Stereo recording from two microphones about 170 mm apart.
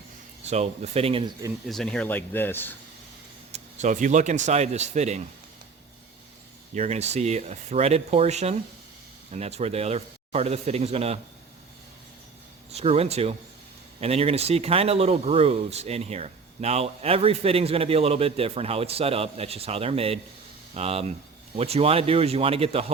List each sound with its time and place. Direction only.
0.4 s speech: 40° right (ahead or behind)
1.6 s speech: centre (ahead or behind)
3.5 s speech: 45° right (ahead or behind)
6.7 s speech: 40° right (ahead or behind)
12.7 s speech: 35° right (ahead or behind)